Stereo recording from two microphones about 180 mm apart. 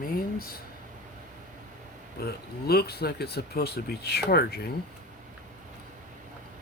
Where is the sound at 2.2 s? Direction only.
60° left (ahead or behind).